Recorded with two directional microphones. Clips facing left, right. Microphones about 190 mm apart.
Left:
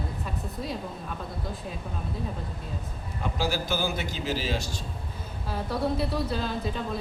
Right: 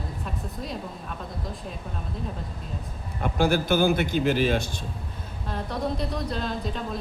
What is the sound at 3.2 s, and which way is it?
A man's voice, 55° right (ahead or behind).